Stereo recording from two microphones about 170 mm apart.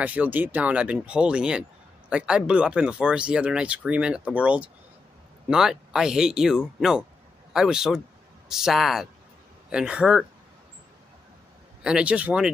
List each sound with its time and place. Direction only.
0.0 s speech: 10° right (ahead or behind)
11.8 s speech: 5° right (ahead or behind)